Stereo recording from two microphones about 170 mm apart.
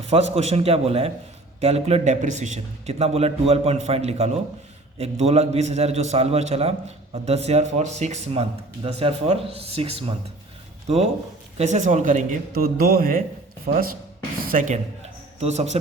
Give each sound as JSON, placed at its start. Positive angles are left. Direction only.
{"t": 0.1, "sound": "a man's voice", "side_deg": -40}